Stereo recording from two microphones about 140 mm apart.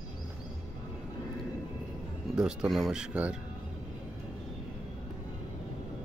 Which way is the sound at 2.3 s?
5° right (ahead or behind).